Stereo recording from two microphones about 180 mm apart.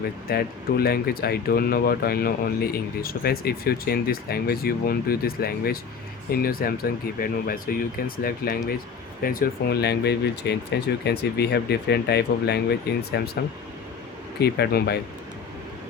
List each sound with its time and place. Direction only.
0.3 s speech: 60° left (ahead or behind)